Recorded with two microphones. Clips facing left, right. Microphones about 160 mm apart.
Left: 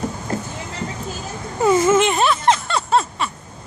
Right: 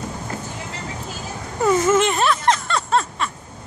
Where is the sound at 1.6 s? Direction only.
5° left (ahead or behind).